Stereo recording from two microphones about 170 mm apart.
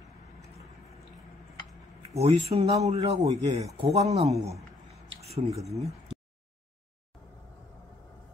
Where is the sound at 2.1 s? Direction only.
35° right (ahead or behind).